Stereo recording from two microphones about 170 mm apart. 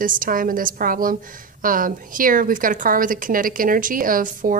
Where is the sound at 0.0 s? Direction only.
55° right (ahead or behind).